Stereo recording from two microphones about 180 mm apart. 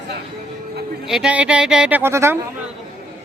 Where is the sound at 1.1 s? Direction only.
5° right (ahead or behind).